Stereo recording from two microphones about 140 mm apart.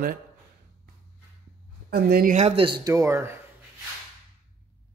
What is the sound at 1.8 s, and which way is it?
Speech, 90° right.